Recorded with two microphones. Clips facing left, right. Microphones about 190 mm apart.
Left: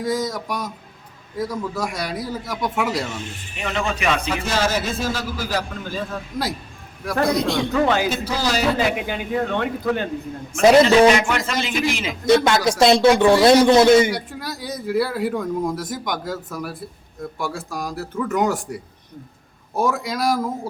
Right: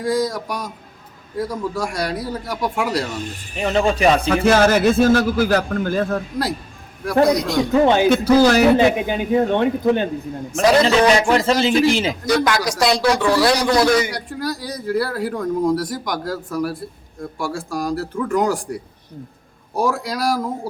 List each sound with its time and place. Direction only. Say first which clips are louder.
0.0 s speech: right 3 dB; centre (ahead or behind)
3.2 s speech: right 6 dB; 35° right (ahead or behind)
4.4 s a man's voice: right 10 dB; 55° right (ahead or behind)
7.7 s a man's voice: right 8 dB; 25° right (ahead or behind)
8.1 s a man's voice: right 10 dB; 55° right (ahead or behind)
8.8 s a man's voice: right 6 dB; 25° right (ahead or behind)
10.7 s speech: left 3 dB; 25° left (ahead or behind)
11.2 s speech: right 7 dB; 30° right (ahead or behind)
12.2 s speech: left 7 dB; 25° left (ahead or behind)
14.1 s speech: right 2 dB; centre (ahead or behind)